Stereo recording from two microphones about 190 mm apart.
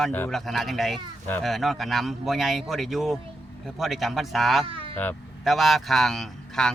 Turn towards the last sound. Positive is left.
turn(degrees=5)  # may be behind; listen again after turning